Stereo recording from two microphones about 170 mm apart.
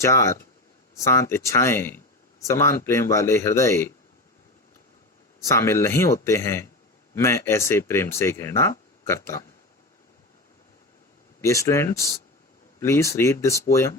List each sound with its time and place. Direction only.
0.0 s speech: 15° left (ahead or behind)
5.5 s speech: 15° left (ahead or behind)
11.3 s speech: 15° left (ahead or behind)